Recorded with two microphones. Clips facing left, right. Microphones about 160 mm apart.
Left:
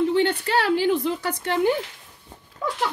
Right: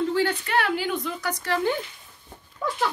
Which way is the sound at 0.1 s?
30° left (ahead or behind).